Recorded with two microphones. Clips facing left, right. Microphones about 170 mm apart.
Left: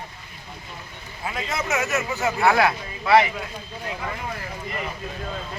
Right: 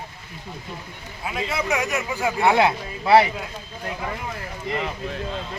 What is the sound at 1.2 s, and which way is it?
Speech, 10° right (ahead or behind).